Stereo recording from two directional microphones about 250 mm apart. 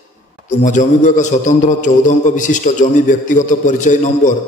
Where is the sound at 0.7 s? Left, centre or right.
Left.